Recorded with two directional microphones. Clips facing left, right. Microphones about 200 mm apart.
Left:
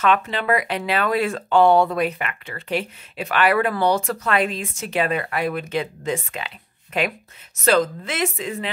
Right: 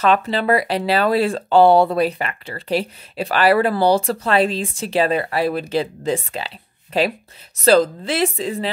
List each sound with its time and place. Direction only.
0.0 s speech: 35° right (ahead or behind)